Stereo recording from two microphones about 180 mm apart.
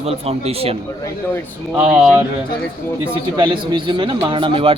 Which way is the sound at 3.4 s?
25° right (ahead or behind).